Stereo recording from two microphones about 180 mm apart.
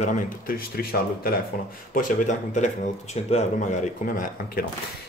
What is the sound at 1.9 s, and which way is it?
Speech, 45° left (ahead or behind).